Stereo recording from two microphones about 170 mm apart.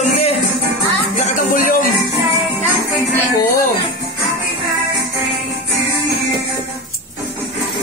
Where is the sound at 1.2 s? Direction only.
50° left (ahead or behind).